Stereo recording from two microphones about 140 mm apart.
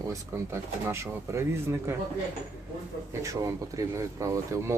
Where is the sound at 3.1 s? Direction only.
20° right (ahead or behind).